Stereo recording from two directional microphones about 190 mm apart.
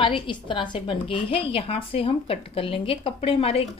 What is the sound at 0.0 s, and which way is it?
A woman's voice, 25° left (ahead or behind).